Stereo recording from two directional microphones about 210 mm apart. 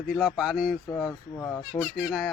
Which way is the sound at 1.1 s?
10° left (ahead or behind).